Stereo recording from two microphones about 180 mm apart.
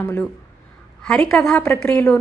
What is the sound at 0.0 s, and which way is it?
A woman's voice, 10° left (ahead or behind).